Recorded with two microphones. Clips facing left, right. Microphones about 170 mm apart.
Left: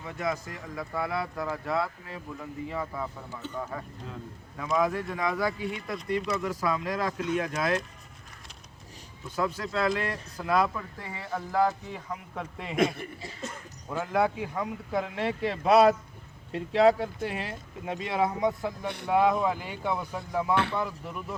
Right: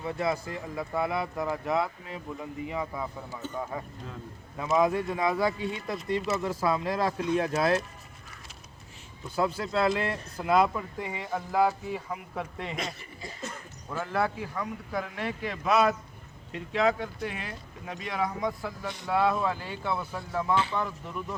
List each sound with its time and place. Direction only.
0.0 s speech: 30° right (ahead or behind)
9.3 s speech: 30° right (ahead or behind); by 12.7 s centre (ahead or behind)
12.7 s speech: 55° left (ahead or behind)
13.9 s speech: 15° left (ahead or behind)